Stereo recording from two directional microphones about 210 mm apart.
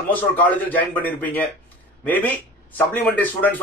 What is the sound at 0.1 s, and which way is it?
A man's voice, 10° left (ahead or behind).